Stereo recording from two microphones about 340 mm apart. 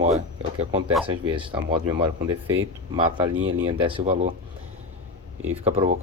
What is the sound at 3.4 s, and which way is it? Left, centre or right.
Speech, right.